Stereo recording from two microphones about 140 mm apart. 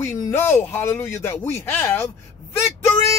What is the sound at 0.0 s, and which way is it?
Speech, 20° left (ahead or behind).